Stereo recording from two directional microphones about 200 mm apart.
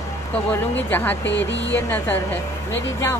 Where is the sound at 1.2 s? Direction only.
65° left (ahead or behind).